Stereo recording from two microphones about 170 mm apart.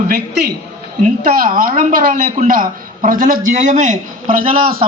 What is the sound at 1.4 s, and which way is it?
A woman's voice, 55° right (ahead or behind).